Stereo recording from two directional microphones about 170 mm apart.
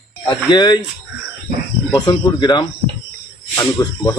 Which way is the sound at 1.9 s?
25° left (ahead or behind).